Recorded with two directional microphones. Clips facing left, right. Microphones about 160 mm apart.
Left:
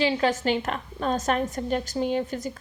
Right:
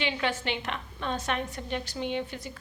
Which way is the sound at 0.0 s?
35° left (ahead or behind).